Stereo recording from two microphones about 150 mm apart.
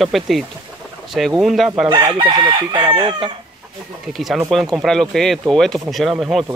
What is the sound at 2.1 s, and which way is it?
Chicken, 35° right (ahead or behind).